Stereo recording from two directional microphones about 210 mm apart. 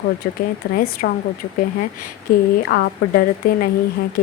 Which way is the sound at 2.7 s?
50° left (ahead or behind).